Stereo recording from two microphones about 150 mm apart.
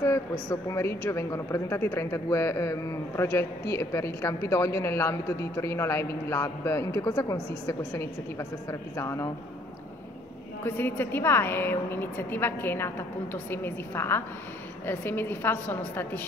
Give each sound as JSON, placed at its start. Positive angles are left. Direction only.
{"t": 0.0, "sound": "a woman's voice", "side_deg": 20}
{"t": 10.6, "sound": "a woman's voice", "side_deg": 15}